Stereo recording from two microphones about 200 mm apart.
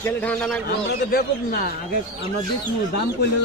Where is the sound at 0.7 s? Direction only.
45° left (ahead or behind).